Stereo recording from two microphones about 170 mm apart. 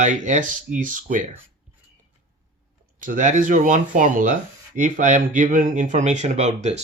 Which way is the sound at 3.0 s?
50° right (ahead or behind).